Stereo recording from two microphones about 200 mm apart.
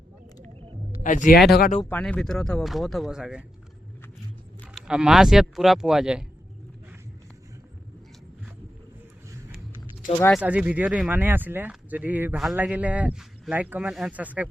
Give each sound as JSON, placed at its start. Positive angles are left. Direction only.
{"t": 0.4, "sound": "a sound", "side_deg": -30}
{"t": 1.0, "sound": "speech", "side_deg": 40}
{"t": 1.9, "sound": "speech", "side_deg": 5}
{"t": 4.6, "sound": "speech", "side_deg": 0}
{"t": 10.2, "sound": "speech", "side_deg": 10}
{"t": 10.4, "sound": "speech", "side_deg": -5}